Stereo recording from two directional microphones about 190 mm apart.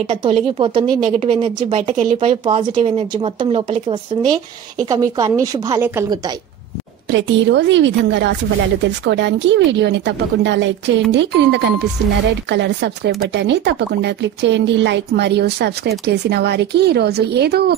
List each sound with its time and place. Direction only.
0.0 s speech: 30° right (ahead or behind)
7.1 s a woman's voice: 70° right (ahead or behind)